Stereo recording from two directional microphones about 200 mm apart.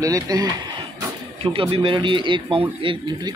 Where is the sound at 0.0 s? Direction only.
15° right (ahead or behind).